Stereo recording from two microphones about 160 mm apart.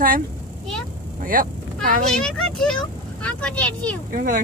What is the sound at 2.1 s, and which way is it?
A child's voice, 5° left (ahead or behind).